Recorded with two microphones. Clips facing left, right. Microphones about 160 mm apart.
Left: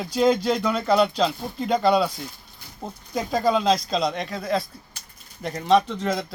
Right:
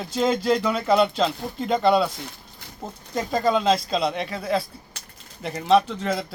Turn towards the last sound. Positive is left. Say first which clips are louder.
# left 1 dB
turn(degrees=-5)  # may be behind; listen again after turning